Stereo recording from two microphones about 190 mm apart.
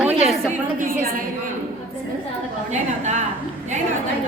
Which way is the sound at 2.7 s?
40° right (ahead or behind).